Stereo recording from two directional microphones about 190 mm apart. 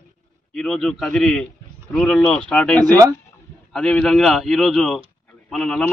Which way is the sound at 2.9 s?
20° right (ahead or behind).